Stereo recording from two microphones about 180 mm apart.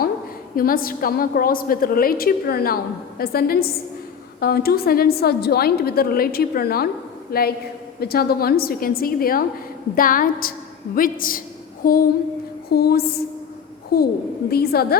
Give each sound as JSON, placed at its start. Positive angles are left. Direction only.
{"t": 0.5, "sound": "a woman's voice", "side_deg": 55}